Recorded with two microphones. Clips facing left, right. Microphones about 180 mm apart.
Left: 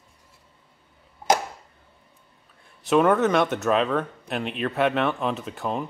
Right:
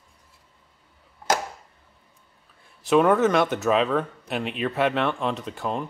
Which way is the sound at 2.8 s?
Centre (ahead or behind).